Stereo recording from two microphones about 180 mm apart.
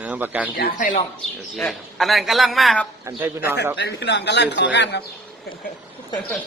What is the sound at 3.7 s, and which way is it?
A man's voice, 70° left (ahead or behind).